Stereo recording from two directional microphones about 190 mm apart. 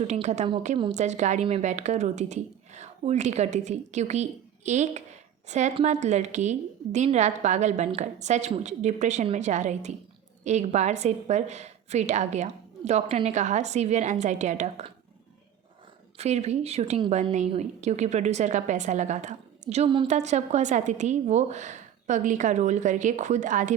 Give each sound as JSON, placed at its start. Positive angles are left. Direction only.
{"t": 0.0, "sound": "a woman's voice", "side_deg": -35}
{"t": 16.1, "sound": "a woman's voice", "side_deg": -35}